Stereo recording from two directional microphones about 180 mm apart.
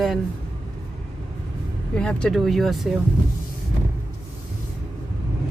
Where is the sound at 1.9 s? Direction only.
5° left (ahead or behind).